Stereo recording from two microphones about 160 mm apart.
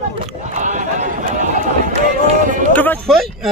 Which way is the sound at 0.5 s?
50° right (ahead or behind).